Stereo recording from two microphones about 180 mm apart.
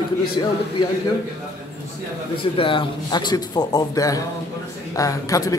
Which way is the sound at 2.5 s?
30° left (ahead or behind).